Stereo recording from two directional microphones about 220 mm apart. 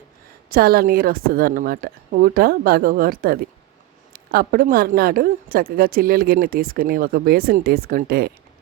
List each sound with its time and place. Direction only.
0.5 s a woman's voice: 45° right (ahead or behind)